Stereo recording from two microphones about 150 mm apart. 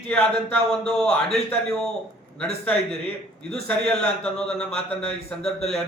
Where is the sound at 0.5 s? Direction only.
5° left (ahead or behind).